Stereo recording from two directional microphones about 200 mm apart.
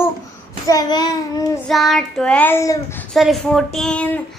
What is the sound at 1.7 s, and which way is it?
Child singing, centre (ahead or behind).